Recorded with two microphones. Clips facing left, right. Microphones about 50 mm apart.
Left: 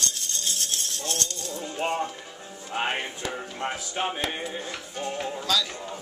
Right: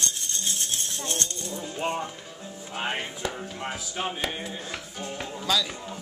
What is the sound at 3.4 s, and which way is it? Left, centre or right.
Music, centre.